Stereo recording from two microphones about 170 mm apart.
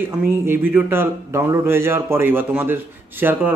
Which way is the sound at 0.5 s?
15° right (ahead or behind).